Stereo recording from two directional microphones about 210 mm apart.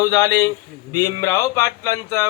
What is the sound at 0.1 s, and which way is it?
Mantra, 15° left (ahead or behind).